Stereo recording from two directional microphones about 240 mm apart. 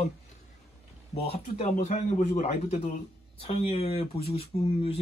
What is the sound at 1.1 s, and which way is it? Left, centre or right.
Speech, left.